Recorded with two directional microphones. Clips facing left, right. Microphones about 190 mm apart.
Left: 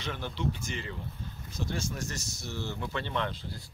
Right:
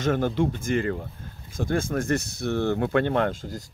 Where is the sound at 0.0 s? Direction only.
50° right (ahead or behind).